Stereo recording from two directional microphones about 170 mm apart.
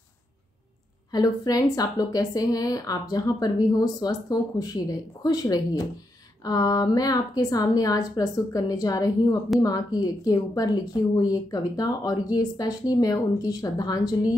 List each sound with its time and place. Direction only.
1.1 s a woman's voice: 25° left (ahead or behind)